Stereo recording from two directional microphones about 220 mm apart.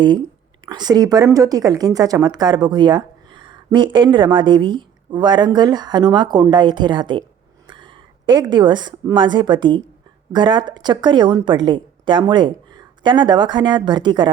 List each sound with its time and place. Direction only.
0.6 s a woman's voice: 20° right (ahead or behind)